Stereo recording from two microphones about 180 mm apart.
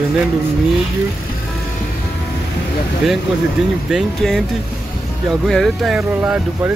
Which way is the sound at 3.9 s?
Centre (ahead or behind).